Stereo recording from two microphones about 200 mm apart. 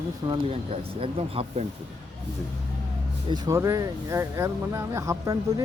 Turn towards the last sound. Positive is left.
turn(degrees=-15)  # may be behind; listen again after turning